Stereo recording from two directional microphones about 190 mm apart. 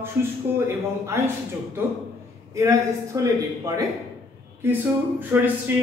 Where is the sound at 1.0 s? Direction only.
15° right (ahead or behind).